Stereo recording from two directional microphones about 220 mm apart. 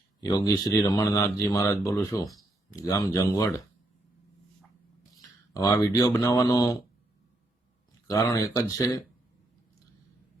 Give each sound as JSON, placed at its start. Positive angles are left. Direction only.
{"t": 0.2, "sound": "speech", "side_deg": 15}
{"t": 5.5, "sound": "speech", "side_deg": 15}
{"t": 8.0, "sound": "speech", "side_deg": 15}